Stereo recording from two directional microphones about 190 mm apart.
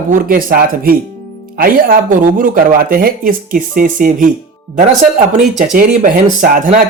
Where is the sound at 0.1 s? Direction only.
50° right (ahead or behind).